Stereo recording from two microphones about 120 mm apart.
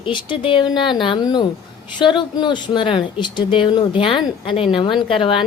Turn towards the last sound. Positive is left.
turn(degrees=45)  # may be behind; listen again after turning